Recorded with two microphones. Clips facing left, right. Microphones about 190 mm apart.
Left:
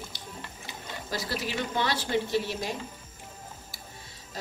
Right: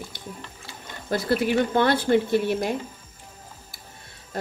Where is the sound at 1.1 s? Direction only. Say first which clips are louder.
Right 11 dB; 55° right (ahead or behind).